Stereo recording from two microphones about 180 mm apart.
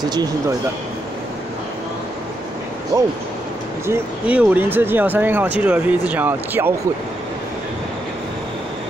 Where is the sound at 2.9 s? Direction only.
20° right (ahead or behind).